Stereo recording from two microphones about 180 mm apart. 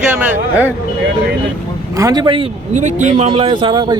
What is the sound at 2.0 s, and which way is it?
Speech, 20° right (ahead or behind).